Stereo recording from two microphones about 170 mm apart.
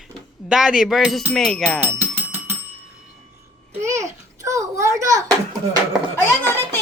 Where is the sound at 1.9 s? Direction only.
15° right (ahead or behind).